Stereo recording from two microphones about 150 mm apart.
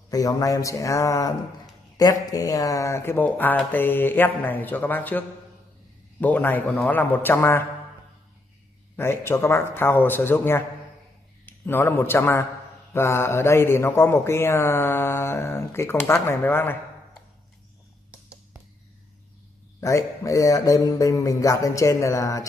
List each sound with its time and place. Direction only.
0.1 s speech: 25° left (ahead or behind)
6.2 s speech: 10° left (ahead or behind)
8.9 s a man's voice: 15° left (ahead or behind)
19.8 s speech: 20° left (ahead or behind)